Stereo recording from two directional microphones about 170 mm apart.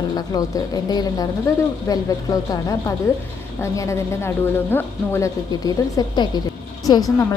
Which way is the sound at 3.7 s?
15° left (ahead or behind).